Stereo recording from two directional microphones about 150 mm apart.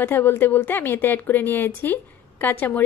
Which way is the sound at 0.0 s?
15° left (ahead or behind).